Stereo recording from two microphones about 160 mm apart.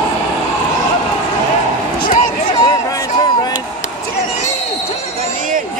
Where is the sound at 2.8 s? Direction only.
20° left (ahead or behind).